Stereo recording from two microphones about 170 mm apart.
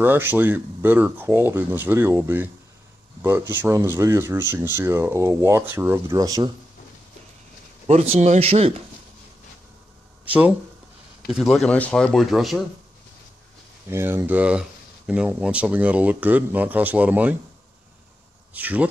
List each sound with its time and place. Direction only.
0.0 s speech: 10° right (ahead or behind)
7.9 s a man's voice: 40° right (ahead or behind)
10.2 s speech: 10° right (ahead or behind)
13.8 s speech: 15° right (ahead or behind)
18.5 s speech: 10° right (ahead or behind)